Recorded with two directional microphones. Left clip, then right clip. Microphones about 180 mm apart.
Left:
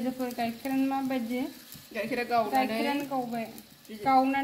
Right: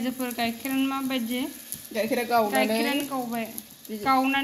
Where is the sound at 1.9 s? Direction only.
50° right (ahead or behind).